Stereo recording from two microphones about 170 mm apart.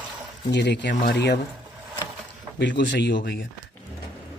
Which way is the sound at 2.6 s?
90° left.